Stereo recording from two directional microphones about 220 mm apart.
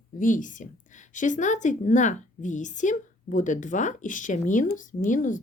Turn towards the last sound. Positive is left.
turn(degrees=35)  # may be behind; listen again after turning